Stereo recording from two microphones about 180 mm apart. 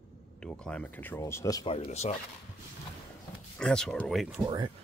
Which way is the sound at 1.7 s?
35° left (ahead or behind).